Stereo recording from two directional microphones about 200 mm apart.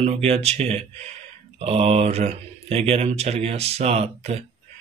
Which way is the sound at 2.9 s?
30° right (ahead or behind).